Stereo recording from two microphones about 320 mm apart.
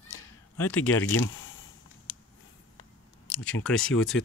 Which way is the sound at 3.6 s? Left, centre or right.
Centre.